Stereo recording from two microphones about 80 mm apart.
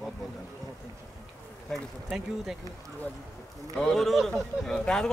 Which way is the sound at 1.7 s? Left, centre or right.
Centre.